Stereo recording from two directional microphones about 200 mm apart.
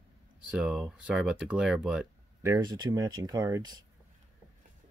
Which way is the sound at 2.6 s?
20° right (ahead or behind).